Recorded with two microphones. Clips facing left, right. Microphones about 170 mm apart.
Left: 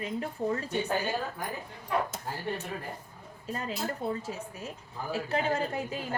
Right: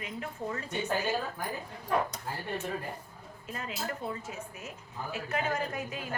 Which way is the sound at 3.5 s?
35° left (ahead or behind).